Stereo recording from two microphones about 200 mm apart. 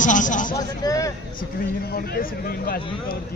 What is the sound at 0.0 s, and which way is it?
Music, 40° left (ahead or behind).